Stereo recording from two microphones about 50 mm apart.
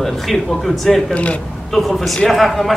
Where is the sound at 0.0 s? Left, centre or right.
Centre.